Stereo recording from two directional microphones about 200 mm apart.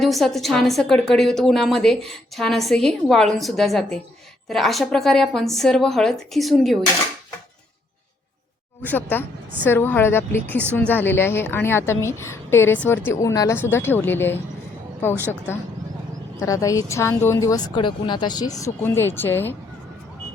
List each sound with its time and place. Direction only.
0.0 s a woman's voice: centre (ahead or behind)
8.8 s speech: 10° left (ahead or behind)
16.4 s speech: 15° left (ahead or behind)